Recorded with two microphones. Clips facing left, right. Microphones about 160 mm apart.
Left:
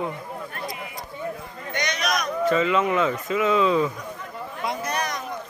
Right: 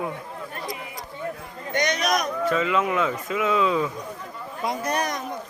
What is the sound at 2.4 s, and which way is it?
Speech, centre (ahead or behind).